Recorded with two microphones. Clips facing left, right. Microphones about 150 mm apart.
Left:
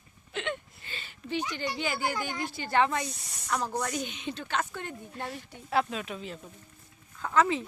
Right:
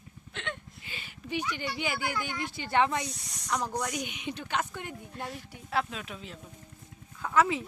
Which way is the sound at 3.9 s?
15° right (ahead or behind).